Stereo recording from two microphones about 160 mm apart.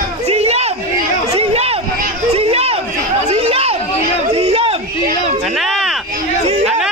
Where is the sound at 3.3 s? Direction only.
40° right (ahead or behind).